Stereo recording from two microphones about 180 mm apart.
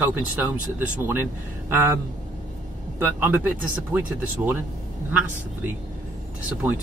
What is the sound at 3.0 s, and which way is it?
Speech, 10° right (ahead or behind).